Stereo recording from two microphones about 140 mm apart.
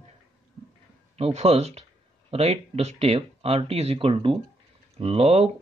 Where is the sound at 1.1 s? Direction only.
45° right (ahead or behind).